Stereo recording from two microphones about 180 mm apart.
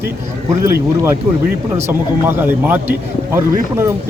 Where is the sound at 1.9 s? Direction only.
10° right (ahead or behind).